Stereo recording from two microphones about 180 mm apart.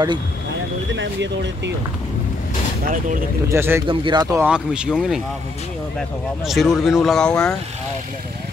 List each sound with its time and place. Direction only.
0.9 s speech: 80° right
2.8 s speech: 50° right (ahead or behind)
3.4 s a man's voice: 15° right (ahead or behind)
3.8 s speech: 25° right (ahead or behind)
4.4 s speech: 5° right (ahead or behind)